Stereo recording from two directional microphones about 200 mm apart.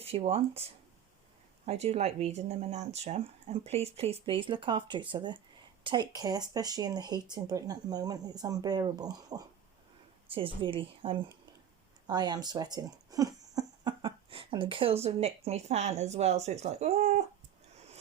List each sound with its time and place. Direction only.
0.0 s speech: 30° right (ahead or behind)